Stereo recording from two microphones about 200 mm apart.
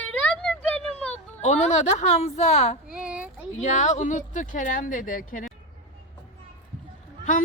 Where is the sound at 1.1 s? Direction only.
35° left (ahead or behind).